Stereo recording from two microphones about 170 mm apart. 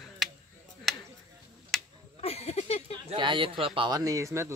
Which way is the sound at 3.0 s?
30° right (ahead or behind).